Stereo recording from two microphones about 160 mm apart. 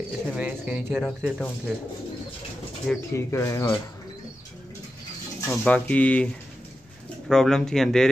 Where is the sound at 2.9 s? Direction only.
5° left (ahead or behind).